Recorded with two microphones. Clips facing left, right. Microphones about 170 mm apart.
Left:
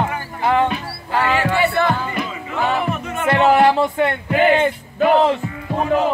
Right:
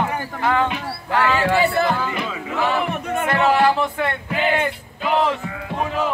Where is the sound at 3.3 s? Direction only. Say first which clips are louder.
Left 4 dB; 25° left (ahead or behind).